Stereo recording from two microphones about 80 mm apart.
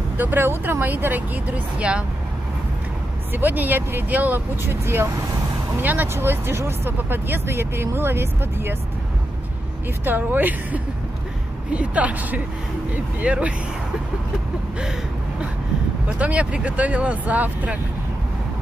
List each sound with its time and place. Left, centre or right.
0.2 s speech: right
3.3 s speech: right
4.8 s speech: right
5.8 s speech: right
10.0 s speech: right
16.2 s speech: centre